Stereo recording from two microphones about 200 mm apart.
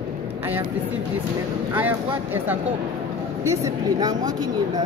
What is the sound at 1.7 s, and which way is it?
Speech, 10° right (ahead or behind).